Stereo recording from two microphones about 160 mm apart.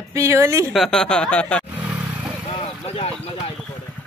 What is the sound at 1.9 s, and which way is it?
Vehicle, 10° right (ahead or behind).